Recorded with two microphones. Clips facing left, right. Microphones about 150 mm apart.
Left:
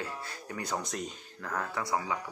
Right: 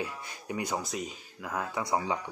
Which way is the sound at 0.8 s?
5° right (ahead or behind).